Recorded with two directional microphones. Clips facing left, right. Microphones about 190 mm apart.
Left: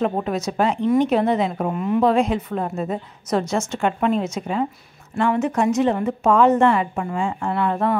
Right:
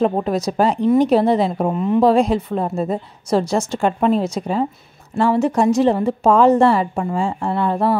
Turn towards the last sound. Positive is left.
turn(degrees=-35)  # may be behind; listen again after turning